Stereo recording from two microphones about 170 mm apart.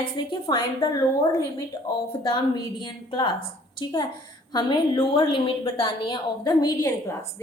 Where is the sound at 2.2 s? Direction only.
25° left (ahead or behind).